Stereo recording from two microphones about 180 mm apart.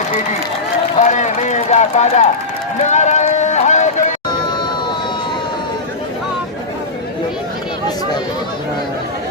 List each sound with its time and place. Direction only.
0.9 s speech: 40° left (ahead or behind)
2.8 s run: 40° left (ahead or behind)